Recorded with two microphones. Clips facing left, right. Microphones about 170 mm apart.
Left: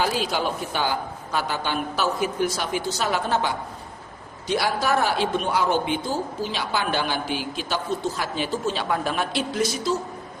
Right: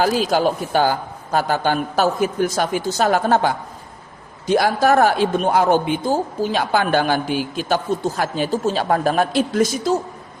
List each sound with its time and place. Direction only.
0.0 s a woman's voice: 45° right (ahead or behind)